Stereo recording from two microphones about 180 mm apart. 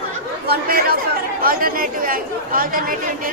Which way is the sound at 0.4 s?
60° right (ahead or behind).